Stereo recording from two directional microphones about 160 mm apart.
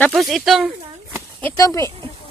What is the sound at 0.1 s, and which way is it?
Speech, centre (ahead or behind).